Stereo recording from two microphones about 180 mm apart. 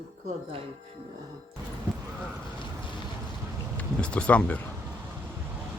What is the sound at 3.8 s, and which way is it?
Speech, 5° left (ahead or behind).